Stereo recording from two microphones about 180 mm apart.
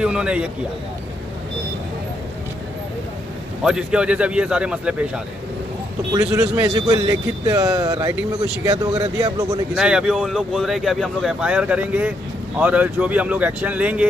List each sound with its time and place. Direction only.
0.0 s speech: 5° right (ahead or behind)
3.6 s speech: 5° right (ahead or behind)
6.1 s a man's voice: 20° right (ahead or behind)
9.8 s speech: 5° right (ahead or behind)